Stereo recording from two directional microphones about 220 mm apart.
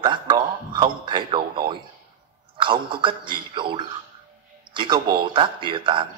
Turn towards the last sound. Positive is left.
turn(degrees=-20)  # may be behind; listen again after turning